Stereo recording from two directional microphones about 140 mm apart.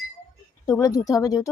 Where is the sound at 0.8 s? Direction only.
25° left (ahead or behind).